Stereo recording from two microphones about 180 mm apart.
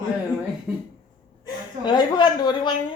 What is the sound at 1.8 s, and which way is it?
Speech, 25° left (ahead or behind).